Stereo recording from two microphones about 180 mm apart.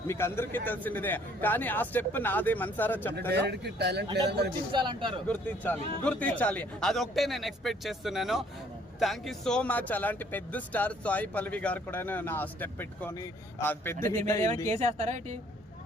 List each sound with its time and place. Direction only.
0.1 s speech: 15° left (ahead or behind)
3.3 s a man's voice: 65° right (ahead or behind)
4.7 s speech: 25° right (ahead or behind)
5.3 s speech: 10° left (ahead or behind)
14.7 s a woman's voice: 40° right (ahead or behind)